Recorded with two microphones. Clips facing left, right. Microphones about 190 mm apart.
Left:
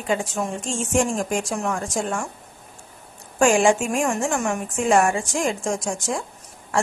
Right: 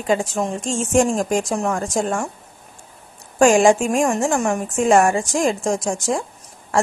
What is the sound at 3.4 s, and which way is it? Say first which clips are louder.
Speech: right 4 dB; 40° right (ahead or behind).